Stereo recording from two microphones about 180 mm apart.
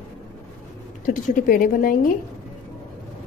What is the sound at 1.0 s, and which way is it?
A woman's voice, 50° left (ahead or behind).